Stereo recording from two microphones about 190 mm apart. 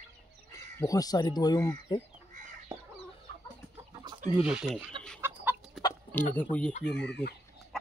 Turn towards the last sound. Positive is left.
turn(degrees=60)  # may be behind; listen again after turning